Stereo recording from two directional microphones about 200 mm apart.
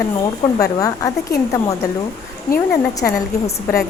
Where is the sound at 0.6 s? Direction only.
15° left (ahead or behind).